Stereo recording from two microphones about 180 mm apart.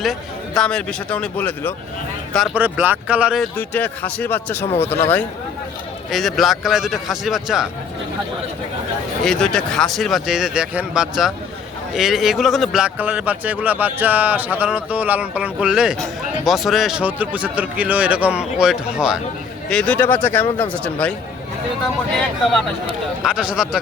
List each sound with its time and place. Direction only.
0.0 s speech: centre (ahead or behind)
2.6 s a man's voice: 10° right (ahead or behind)
3.6 s speech: 10° left (ahead or behind)
4.6 s speech: 35° left (ahead or behind)
6.1 s speech: centre (ahead or behind)
9.2 s a man's voice: 5° left (ahead or behind)
19.7 s speech: 5° left (ahead or behind)
23.2 s speech: 5° right (ahead or behind)